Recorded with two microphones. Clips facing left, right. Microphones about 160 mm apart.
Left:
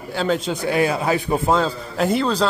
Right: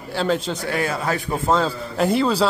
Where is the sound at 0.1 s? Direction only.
Centre (ahead or behind).